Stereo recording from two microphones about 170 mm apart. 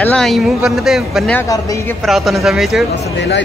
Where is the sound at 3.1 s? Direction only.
90° left.